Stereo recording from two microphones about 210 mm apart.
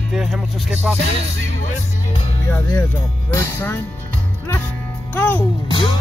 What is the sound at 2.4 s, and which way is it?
Speech, 10° left (ahead or behind).